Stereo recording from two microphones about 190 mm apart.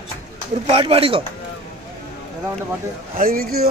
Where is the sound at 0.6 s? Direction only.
30° right (ahead or behind).